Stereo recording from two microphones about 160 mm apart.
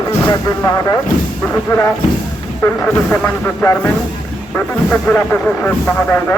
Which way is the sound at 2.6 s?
10° left (ahead or behind).